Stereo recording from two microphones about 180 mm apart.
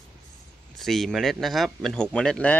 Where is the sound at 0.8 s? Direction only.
Centre (ahead or behind).